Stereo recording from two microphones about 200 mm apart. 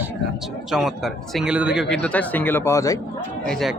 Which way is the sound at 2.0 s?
5° left (ahead or behind).